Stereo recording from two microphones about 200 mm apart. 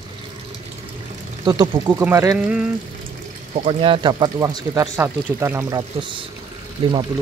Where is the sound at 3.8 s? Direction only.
25° right (ahead or behind).